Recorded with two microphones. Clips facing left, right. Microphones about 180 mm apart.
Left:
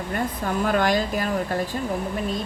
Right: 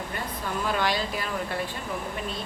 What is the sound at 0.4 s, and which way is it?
Speech, 50° left (ahead or behind).